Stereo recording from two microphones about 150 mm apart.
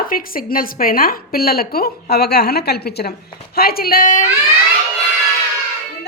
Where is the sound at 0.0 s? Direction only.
70° left (ahead or behind).